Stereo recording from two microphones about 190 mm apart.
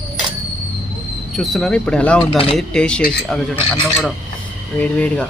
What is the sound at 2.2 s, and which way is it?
Speech, 30° left (ahead or behind).